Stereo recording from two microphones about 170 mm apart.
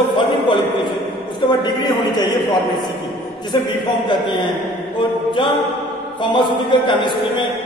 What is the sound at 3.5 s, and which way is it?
Speech, 25° left (ahead or behind).